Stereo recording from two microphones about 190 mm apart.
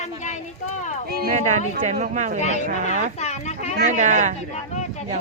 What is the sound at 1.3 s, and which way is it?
Speech, 40° right (ahead or behind).